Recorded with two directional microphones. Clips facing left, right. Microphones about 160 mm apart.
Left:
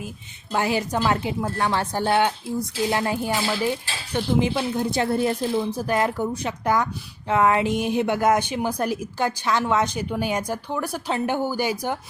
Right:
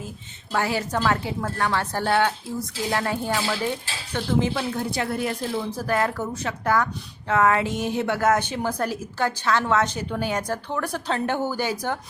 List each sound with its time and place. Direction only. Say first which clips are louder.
0.5 s a woman's voice: left 1 dB; 15° left (ahead or behind)